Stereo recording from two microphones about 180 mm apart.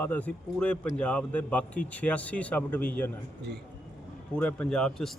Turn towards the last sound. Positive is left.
turn(degrees=5)  # may be behind; listen again after turning